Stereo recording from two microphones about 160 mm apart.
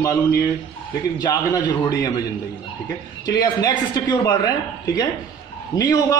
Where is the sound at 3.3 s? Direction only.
25° left (ahead or behind).